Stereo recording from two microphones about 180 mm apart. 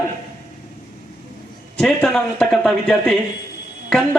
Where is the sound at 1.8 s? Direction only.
5° left (ahead or behind).